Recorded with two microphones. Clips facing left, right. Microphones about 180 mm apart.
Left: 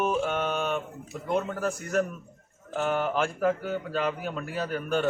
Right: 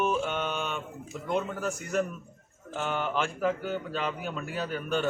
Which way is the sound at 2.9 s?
40° left (ahead or behind).